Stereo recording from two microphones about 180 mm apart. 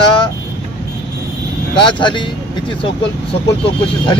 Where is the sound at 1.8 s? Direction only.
25° left (ahead or behind).